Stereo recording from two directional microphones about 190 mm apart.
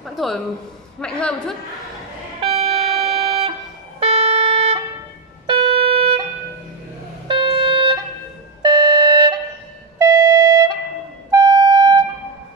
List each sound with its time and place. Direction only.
0.0 s a sound: centre (ahead or behind)
1.0 s a man's voice: 5° left (ahead or behind)
2.4 s music: 30° right (ahead or behind)
5.5 s a sound: 30° right (ahead or behind)
7.2 s music: 25° right (ahead or behind)
11.2 s siren: 20° right (ahead or behind)